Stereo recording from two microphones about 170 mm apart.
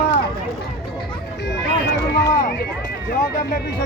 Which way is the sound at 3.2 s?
60° left (ahead or behind).